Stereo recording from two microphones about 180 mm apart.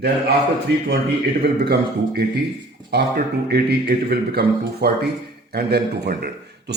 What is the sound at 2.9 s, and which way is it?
A man's voice, 60° right (ahead or behind).